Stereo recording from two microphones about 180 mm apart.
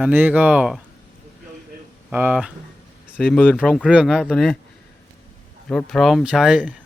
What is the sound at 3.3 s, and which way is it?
Speech, 10° left (ahead or behind).